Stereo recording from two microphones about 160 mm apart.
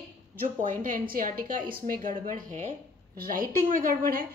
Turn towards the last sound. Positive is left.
turn(degrees=-60)  # may be behind; listen again after turning